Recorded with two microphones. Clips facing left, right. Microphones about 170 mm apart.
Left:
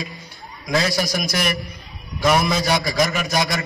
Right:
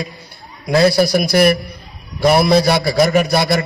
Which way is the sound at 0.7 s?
35° right (ahead or behind).